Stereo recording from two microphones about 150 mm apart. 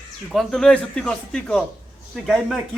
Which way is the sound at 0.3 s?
Centre (ahead or behind).